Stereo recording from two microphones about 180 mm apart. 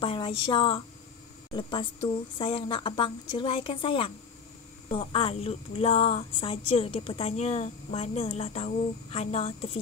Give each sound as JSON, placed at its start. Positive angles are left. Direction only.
{"t": 0.0, "sound": "a woman's voice", "side_deg": 30}